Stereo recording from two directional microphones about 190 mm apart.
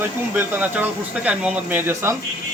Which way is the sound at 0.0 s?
10° right (ahead or behind).